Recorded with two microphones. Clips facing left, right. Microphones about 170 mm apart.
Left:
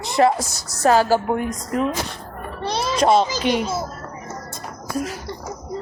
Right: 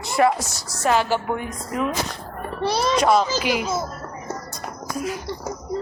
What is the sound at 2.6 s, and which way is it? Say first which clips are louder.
Speech: right 3 dB; centre (ahead or behind).